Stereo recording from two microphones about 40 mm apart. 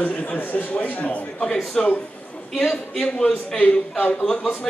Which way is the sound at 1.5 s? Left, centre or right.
Centre.